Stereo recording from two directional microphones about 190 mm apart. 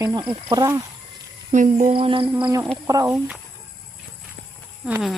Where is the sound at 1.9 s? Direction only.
25° right (ahead or behind).